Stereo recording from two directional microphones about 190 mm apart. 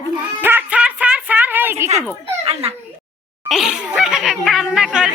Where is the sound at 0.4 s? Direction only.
10° right (ahead or behind).